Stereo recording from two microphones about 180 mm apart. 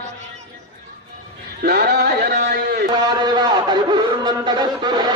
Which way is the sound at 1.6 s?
60° right (ahead or behind).